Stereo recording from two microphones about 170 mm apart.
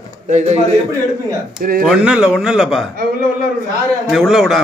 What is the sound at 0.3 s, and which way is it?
Speech, 45° right (ahead or behind).